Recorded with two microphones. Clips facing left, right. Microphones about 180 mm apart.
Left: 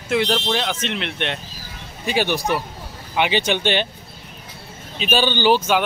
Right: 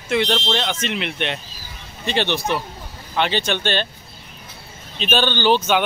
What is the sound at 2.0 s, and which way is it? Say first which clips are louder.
Speech: left 1 dB; 10° left (ahead or behind).